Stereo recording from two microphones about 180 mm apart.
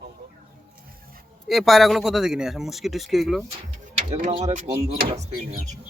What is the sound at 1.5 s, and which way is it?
Speech, centre (ahead or behind).